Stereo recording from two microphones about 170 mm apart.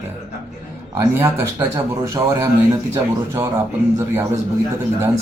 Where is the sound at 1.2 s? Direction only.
15° right (ahead or behind).